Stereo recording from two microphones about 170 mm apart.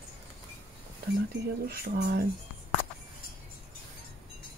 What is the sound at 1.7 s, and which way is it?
Speech, 75° right (ahead or behind).